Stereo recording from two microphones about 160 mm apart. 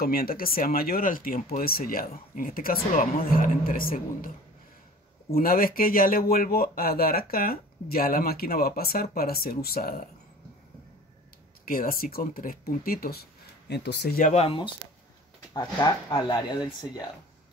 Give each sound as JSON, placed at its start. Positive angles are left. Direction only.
{"t": 0.0, "sound": "speech", "side_deg": 65}
{"t": 5.3, "sound": "speech", "side_deg": 65}
{"t": 11.6, "sound": "speech", "side_deg": 60}
{"t": 14.3, "sound": "speech", "side_deg": 35}
{"t": 15.5, "sound": "speech", "side_deg": 25}